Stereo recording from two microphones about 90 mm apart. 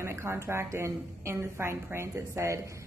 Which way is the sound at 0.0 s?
30° right (ahead or behind).